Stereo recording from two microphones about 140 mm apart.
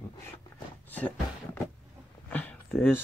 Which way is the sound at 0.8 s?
10° left (ahead or behind).